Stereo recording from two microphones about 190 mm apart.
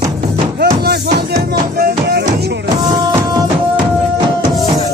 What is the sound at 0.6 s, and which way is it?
Music, 55° right (ahead or behind).